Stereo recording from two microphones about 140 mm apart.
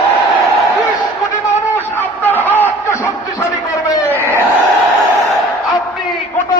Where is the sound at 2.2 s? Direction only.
15° left (ahead or behind).